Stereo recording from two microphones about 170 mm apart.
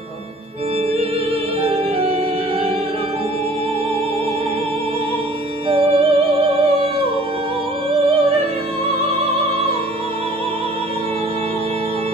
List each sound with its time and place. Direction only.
5.7 s music: 35° right (ahead or behind)
7.9 s music: 35° right (ahead or behind)